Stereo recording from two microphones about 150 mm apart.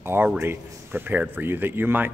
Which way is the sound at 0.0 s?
15° right (ahead or behind).